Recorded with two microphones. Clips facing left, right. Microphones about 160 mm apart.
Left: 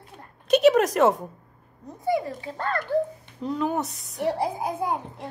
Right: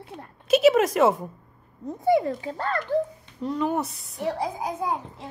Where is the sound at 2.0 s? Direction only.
55° right (ahead or behind).